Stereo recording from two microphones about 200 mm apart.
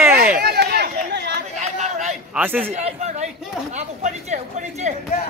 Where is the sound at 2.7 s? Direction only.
35° right (ahead or behind).